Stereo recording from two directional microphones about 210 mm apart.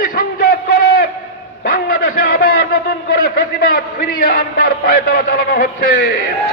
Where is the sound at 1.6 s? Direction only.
45° left (ahead or behind).